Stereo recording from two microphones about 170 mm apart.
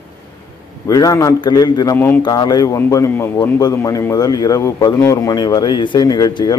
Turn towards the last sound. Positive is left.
turn(degrees=20)  # may be behind; listen again after turning